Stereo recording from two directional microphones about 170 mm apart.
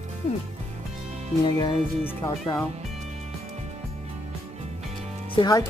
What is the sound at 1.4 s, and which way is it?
Speech, 25° left (ahead or behind).